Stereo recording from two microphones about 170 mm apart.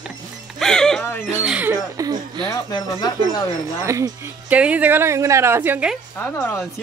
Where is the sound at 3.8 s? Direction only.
20° right (ahead or behind).